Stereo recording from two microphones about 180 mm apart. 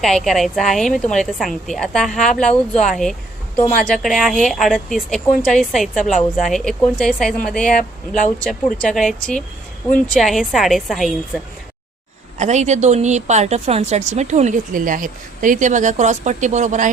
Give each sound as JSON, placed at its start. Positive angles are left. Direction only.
{"t": 0.0, "sound": "speech", "side_deg": 0}
{"t": 10.1, "sound": "speech", "side_deg": 0}
{"t": 12.4, "sound": "a woman's voice", "side_deg": -40}